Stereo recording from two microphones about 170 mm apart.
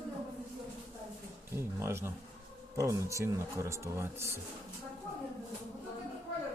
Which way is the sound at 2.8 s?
20° right (ahead or behind).